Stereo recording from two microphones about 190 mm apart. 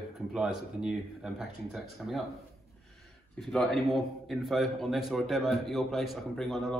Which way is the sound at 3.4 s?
5° left (ahead or behind).